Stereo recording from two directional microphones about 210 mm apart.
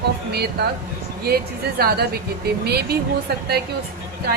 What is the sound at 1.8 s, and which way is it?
A woman's voice, 45° right (ahead or behind).